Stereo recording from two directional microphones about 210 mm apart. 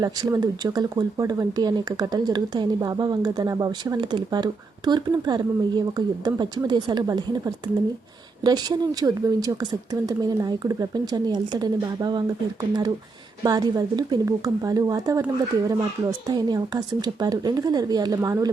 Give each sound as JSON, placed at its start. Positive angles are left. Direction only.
{"t": 0.0, "sound": "speech", "side_deg": -20}
{"t": 13.4, "sound": "speech", "side_deg": -15}